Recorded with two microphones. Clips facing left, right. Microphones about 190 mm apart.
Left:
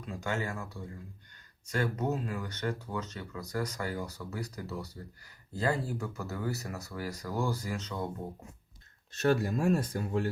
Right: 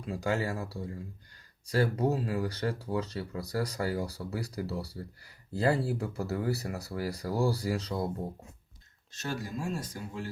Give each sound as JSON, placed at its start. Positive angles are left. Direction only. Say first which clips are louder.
{"t": 0.0, "sound": "speech", "louder": "right 4 dB", "side_deg": -35}
{"t": 9.1, "sound": "speech", "louder": "left 8 dB", "side_deg": 60}